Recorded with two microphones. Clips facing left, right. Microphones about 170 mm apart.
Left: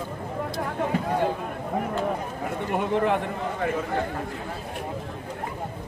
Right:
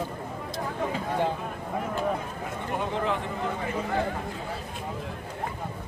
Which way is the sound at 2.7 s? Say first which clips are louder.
Left 5 dB; 60° left (ahead or behind).